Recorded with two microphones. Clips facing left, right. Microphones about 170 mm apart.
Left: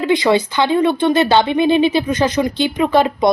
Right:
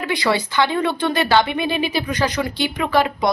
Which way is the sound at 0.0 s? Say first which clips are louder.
Left 6 dB; 20° left (ahead or behind).